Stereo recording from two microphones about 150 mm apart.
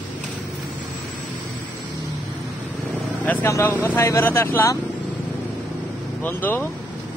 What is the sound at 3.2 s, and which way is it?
A man's voice, 10° left (ahead or behind).